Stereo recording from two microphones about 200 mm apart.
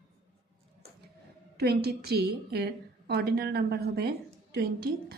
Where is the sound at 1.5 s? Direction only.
50° right (ahead or behind).